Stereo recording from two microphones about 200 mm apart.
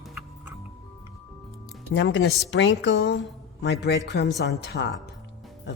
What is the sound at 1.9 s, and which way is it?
Speech, 70° left (ahead or behind).